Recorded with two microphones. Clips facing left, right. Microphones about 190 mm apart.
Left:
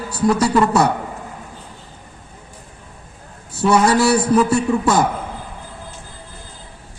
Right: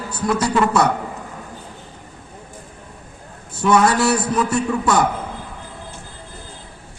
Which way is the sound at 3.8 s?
40° left (ahead or behind).